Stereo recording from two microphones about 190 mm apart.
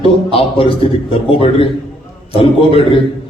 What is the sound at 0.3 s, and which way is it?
Speech, 30° left (ahead or behind).